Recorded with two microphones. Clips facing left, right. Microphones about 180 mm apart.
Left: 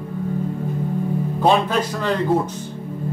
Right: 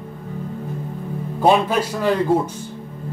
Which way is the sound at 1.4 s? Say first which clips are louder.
Right 2 dB; 10° right (ahead or behind).